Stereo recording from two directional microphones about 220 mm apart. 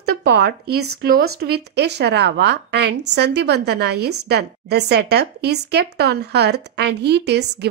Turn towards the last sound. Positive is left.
turn(degrees=-50)  # may be behind; listen again after turning